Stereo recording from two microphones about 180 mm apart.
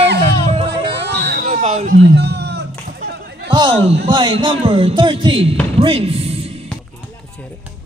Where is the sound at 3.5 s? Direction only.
25° right (ahead or behind).